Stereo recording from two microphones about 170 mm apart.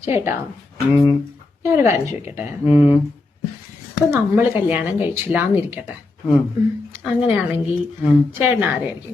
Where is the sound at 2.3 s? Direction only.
35° left (ahead or behind).